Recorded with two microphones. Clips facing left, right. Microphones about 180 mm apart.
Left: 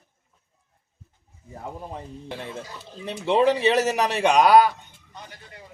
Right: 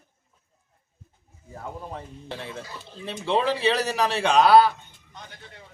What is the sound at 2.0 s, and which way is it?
A man's voice, 15° left (ahead or behind).